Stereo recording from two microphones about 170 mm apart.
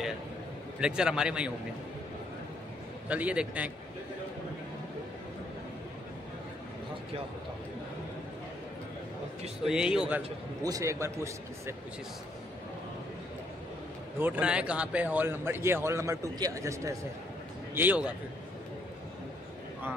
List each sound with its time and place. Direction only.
0.7 s a man's voice: 5° right (ahead or behind)
3.1 s a man's voice: 10° right (ahead or behind)
9.7 s a man's voice: 5° right (ahead or behind)
10.6 s a man's voice: 20° right (ahead or behind)
14.1 s a man's voice: 10° right (ahead or behind)